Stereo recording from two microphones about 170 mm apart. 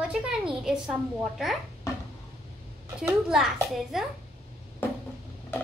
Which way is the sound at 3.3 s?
5° right (ahead or behind).